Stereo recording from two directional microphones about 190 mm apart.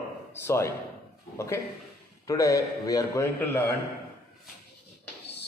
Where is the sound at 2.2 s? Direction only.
15° left (ahead or behind).